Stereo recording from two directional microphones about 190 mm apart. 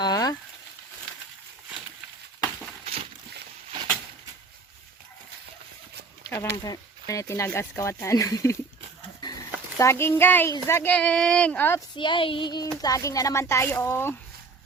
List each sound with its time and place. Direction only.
0.0 s a sound: 20° left (ahead or behind)
6.2 s speech: 15° left (ahead or behind)
9.7 s speech: 15° left (ahead or behind)
11.9 s child singing: 25° left (ahead or behind)
12.8 s speech: 20° left (ahead or behind)